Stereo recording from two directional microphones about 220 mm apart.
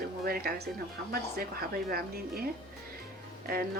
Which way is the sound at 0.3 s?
45° right (ahead or behind).